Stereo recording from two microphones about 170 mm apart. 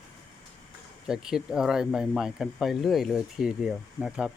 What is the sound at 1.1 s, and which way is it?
Speech, 5° right (ahead or behind).